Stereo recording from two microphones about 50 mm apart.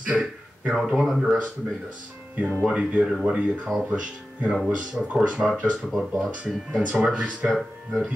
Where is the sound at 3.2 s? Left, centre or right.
Centre.